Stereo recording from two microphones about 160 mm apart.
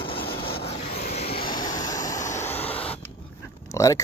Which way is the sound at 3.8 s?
20° left (ahead or behind).